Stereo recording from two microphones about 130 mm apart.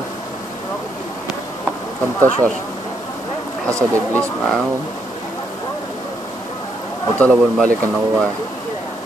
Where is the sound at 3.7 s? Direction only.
20° right (ahead or behind).